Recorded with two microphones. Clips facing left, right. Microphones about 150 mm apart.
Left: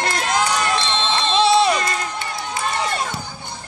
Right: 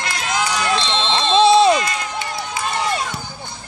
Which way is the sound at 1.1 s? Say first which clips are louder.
Right 4 dB; 20° right (ahead or behind).